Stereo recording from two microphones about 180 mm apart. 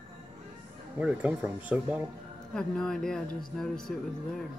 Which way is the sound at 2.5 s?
5° left (ahead or behind).